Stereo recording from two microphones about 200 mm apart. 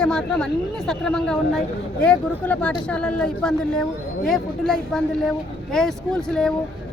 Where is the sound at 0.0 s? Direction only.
5° left (ahead or behind).